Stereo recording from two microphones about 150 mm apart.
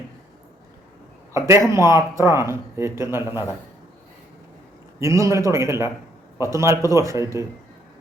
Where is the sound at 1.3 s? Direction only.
20° right (ahead or behind).